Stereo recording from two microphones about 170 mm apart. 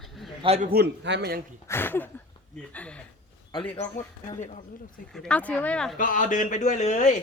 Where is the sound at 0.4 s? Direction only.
40° right (ahead or behind).